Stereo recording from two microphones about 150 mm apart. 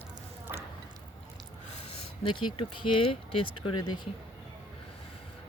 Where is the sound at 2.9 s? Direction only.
35° left (ahead or behind).